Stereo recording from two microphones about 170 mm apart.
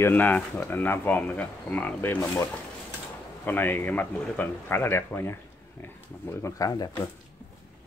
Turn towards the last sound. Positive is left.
turn(degrees=20)  # may be behind; listen again after turning